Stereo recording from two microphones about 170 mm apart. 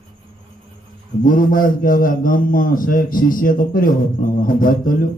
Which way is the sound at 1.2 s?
55° left (ahead or behind).